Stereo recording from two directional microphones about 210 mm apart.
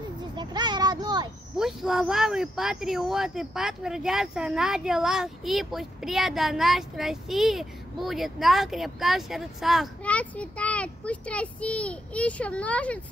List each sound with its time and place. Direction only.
0.4 s a child's voice: 20° right (ahead or behind)
1.6 s speech: centre (ahead or behind)